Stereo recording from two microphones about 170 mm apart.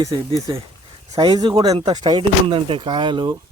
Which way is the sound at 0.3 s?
20° right (ahead or behind).